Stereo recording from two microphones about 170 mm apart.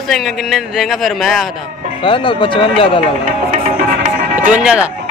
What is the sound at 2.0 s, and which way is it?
Speech, 30° left (ahead or behind).